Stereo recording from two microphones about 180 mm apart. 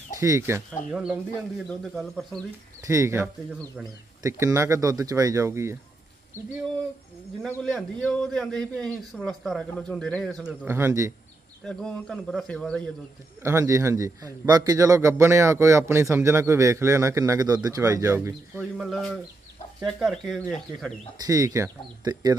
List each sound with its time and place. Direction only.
0.2 s a man's voice: 15° right (ahead or behind)
1.6 s a man's voice: centre (ahead or behind)
2.8 s a man's voice: 15° right (ahead or behind)
7.4 s a man's voice: 5° left (ahead or behind)
10.4 s a man's voice: 10° right (ahead or behind)
11.6 s a man's voice: 5° left (ahead or behind)
13.4 s a man's voice: 15° right (ahead or behind)
18.8 s a man's voice: centre (ahead or behind)
21.3 s speech: 20° right (ahead or behind)